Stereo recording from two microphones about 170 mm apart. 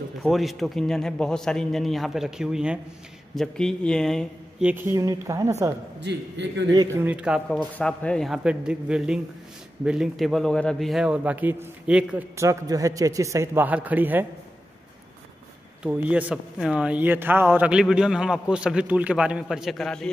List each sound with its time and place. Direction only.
0.2 s speech: centre (ahead or behind)
4.6 s a man's voice: 10° right (ahead or behind)
5.9 s a man's voice: 90° right
6.7 s a man's voice: 20° right (ahead or behind)
7.1 s speech: 5° right (ahead or behind)
12.4 s a man's voice: 20° right (ahead or behind)
15.8 s speech: 5° right (ahead or behind)